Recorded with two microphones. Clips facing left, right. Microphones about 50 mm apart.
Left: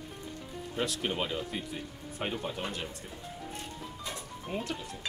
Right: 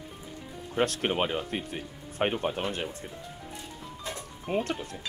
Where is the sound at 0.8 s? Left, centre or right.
Right.